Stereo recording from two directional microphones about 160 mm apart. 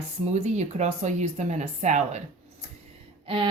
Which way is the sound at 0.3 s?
45° right (ahead or behind).